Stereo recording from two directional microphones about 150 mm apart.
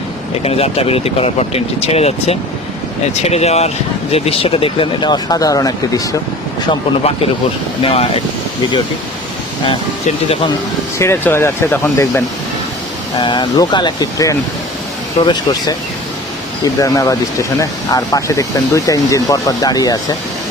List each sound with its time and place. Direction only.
0.4 s speech: 40° left (ahead or behind); by 6.1 s 25° left (ahead or behind)
6.7 s speech: 40° left (ahead or behind)
10.9 s speech: 15° left (ahead or behind)
13.1 s speech: 30° left (ahead or behind)
16.7 s speech: 20° left (ahead or behind)